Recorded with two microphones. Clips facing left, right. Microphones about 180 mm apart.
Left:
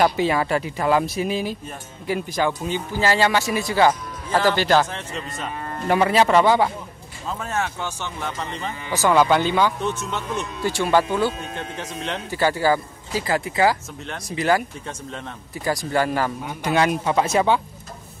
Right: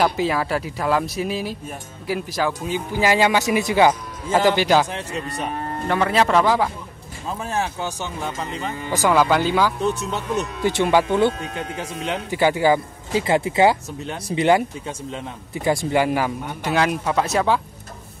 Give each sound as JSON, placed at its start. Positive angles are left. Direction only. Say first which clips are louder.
{"t": 0.0, "sound": "speech", "louder": "left 1 dB", "side_deg": 0}
{"t": 2.9, "sound": "speech", "louder": "right 2 dB", "side_deg": -15}
{"t": 5.9, "sound": "speech", "louder": "left 2 dB", "side_deg": 5}
{"t": 7.2, "sound": "speech", "louder": "right 1 dB", "side_deg": -15}
{"t": 8.4, "sound": "speech", "louder": "right 2 dB", "side_deg": -5}
{"t": 9.8, "sound": "speech", "louder": "right 3 dB", "side_deg": -35}
{"t": 10.6, "sound": "speech", "louder": "right 1 dB", "side_deg": -20}
{"t": 11.5, "sound": "speech", "louder": "right 2 dB", "side_deg": -5}
{"t": 14.9, "sound": "speech", "louder": "right 3 dB", "side_deg": -5}
{"t": 15.5, "sound": "speech", "louder": "right 4 dB", "side_deg": -25}
{"t": 16.0, "sound": "speech", "louder": "right 2 dB", "side_deg": -15}
{"t": 16.6, "sound": "speech", "louder": "left 1 dB", "side_deg": 0}